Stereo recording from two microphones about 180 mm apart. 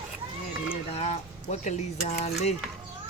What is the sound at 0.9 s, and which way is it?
Speech, 40° left (ahead or behind).